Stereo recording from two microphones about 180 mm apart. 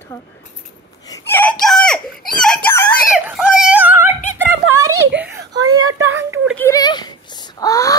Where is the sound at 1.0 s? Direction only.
20° left (ahead or behind).